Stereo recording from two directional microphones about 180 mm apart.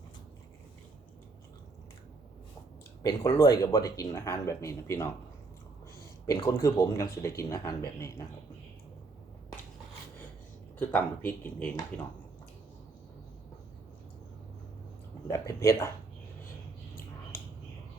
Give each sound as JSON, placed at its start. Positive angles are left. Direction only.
{"t": 3.0, "sound": "speech", "side_deg": 20}
{"t": 6.2, "sound": "speech", "side_deg": 15}
{"t": 10.8, "sound": "speech", "side_deg": 10}
{"t": 15.3, "sound": "speech", "side_deg": 15}